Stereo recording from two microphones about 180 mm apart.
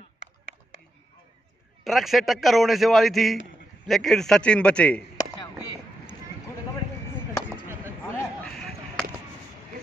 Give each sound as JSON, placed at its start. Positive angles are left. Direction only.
{"t": 1.9, "sound": "a man's voice", "side_deg": 0}
{"t": 5.1, "sound": "chop", "side_deg": 20}
{"t": 7.6, "sound": "chop", "side_deg": -15}